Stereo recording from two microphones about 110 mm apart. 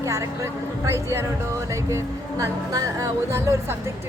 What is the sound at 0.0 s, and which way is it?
Speech, 25° right (ahead or behind).